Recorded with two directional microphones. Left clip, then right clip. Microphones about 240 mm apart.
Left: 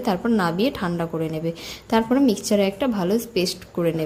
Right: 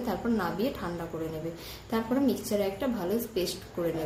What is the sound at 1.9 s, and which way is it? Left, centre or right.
A woman's voice, left.